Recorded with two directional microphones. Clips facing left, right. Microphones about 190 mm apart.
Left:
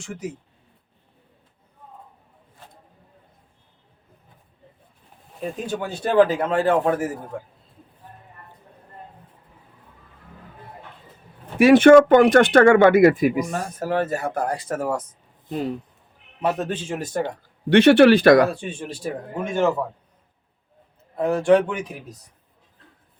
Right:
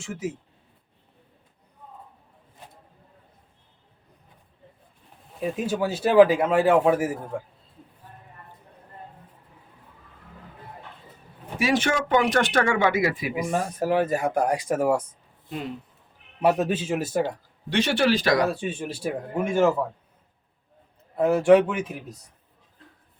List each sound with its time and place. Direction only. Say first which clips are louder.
0.0 s a man's voice: right 1 dB; 5° right (ahead or behind)
2.6 s a sound: right 1 dB; 15° right (ahead or behind)
5.4 s a man's voice: right 2 dB; 5° right (ahead or behind)
11.5 s speech: left 13 dB; 55° left (ahead or behind)
13.5 s a man's voice: right 1 dB; 15° right (ahead or behind)
15.4 s speech: left 6 dB; 40° left (ahead or behind)
16.4 s a man's voice: right 2 dB; 10° right (ahead or behind)
17.7 s speech: left 10 dB; 60° left (ahead or behind)
18.6 s a man's voice: right 1 dB; 5° right (ahead or behind)
21.2 s a man's voice: right 1 dB; 5° right (ahead or behind)